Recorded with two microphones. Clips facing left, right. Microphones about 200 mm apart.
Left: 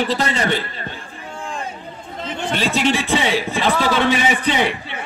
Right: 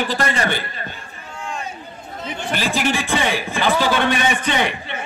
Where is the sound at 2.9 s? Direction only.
Centre (ahead or behind).